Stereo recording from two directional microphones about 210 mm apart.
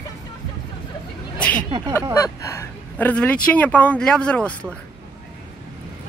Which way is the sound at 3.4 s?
5° left (ahead or behind).